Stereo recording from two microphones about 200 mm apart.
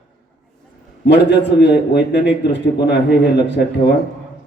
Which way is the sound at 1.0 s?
60° left (ahead or behind).